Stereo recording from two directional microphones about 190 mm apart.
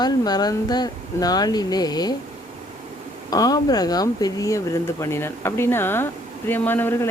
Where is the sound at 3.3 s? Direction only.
20° left (ahead or behind).